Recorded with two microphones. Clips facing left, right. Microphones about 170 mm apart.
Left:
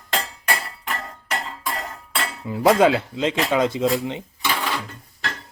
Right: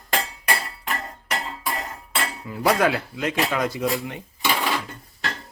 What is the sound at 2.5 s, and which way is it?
Speech, 25° left (ahead or behind).